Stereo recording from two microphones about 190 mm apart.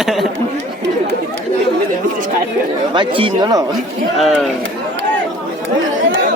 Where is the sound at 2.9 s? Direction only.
25° right (ahead or behind).